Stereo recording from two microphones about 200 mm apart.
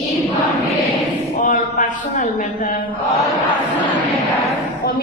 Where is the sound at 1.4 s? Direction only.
40° left (ahead or behind).